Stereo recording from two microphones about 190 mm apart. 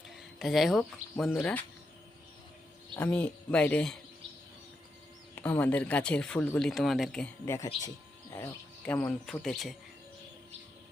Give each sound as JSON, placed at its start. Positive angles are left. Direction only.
{"t": 0.2, "sound": "speech", "side_deg": 0}
{"t": 2.9, "sound": "speech", "side_deg": 5}
{"t": 5.3, "sound": "speech", "side_deg": 10}
{"t": 7.4, "sound": "speech", "side_deg": 15}